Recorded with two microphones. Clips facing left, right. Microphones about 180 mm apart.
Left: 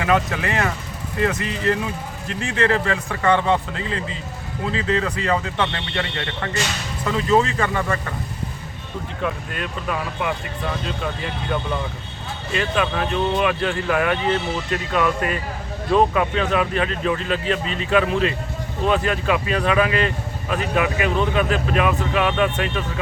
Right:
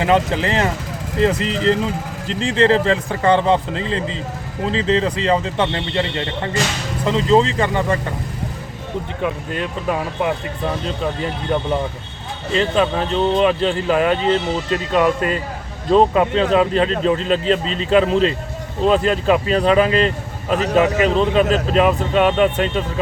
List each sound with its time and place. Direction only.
0.0 s a man's voice: 30° right (ahead or behind)
9.6 s a man's voice: 30° right (ahead or behind)
12.5 s speech: 30° right (ahead or behind)